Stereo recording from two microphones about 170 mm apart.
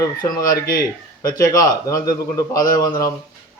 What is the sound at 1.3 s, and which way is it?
Speech, 20° left (ahead or behind).